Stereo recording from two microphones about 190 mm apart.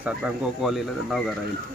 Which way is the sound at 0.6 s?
Centre (ahead or behind).